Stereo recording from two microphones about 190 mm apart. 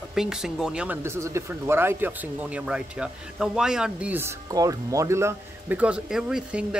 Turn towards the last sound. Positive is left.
turn(degrees=-5)  # may be behind; listen again after turning